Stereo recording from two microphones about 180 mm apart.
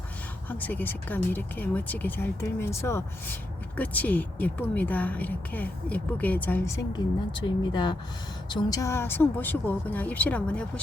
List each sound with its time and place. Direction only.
0.4 s speech: 10° left (ahead or behind)
6.9 s speech: 25° left (ahead or behind); by 10.7 s 5° left (ahead or behind)